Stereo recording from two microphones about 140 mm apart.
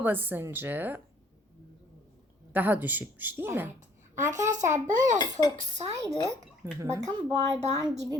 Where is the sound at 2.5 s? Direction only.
15° right (ahead or behind).